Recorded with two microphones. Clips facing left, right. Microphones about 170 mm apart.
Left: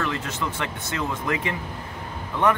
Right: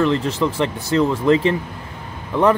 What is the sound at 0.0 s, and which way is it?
Speech, 30° right (ahead or behind).